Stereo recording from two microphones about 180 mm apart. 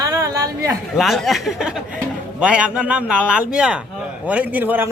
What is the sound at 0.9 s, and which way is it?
A man's voice, centre (ahead or behind).